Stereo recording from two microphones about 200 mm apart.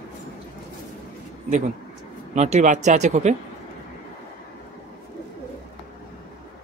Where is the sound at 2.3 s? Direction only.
35° right (ahead or behind).